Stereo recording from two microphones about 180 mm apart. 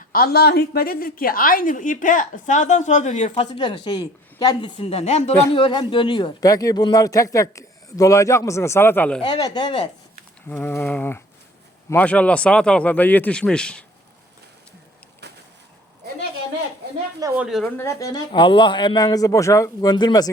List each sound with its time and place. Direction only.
0.1 s a woman's voice: 60° left (ahead or behind); by 9.2 s 10° left (ahead or behind)
9.2 s speech: 25° left (ahead or behind)
10.5 s a man's voice: 10° left (ahead or behind)
15.2 s a sound: 70° right (ahead or behind)
17.3 s a woman's voice: 5° right (ahead or behind)
17.7 s speech: 15° left (ahead or behind)